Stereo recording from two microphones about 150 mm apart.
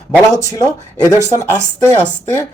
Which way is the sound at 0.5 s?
25° left (ahead or behind).